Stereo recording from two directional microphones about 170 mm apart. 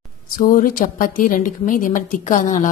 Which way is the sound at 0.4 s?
50° left (ahead or behind).